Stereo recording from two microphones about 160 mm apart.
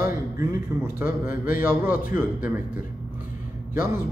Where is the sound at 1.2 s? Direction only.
60° left (ahead or behind).